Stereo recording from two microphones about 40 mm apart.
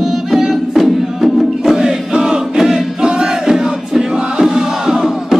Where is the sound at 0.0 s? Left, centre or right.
Centre.